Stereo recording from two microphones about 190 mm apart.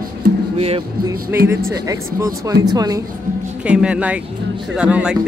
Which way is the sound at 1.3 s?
10° right (ahead or behind).